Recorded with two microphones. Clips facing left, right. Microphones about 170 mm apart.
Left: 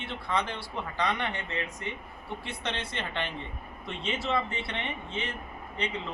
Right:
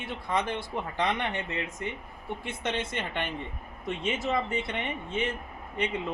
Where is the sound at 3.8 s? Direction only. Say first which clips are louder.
Right 3 dB; 45° right (ahead or behind).